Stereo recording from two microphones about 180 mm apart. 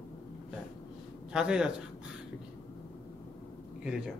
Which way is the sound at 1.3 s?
5° right (ahead or behind).